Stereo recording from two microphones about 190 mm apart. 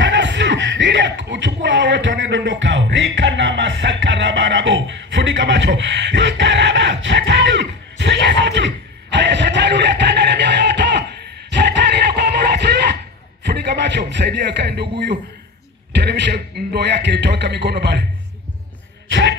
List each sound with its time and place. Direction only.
0.0 s music: 70° right (ahead or behind)
13.5 s a sound: 60° right (ahead or behind)
15.9 s a man's voice: 65° right (ahead or behind)